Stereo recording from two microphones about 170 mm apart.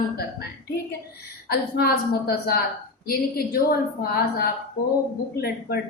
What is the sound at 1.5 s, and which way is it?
A woman's voice, 65° left (ahead or behind).